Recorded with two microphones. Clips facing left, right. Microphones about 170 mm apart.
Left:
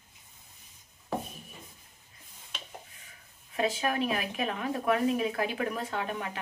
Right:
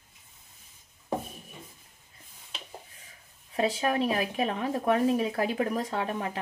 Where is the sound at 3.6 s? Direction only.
30° right (ahead or behind).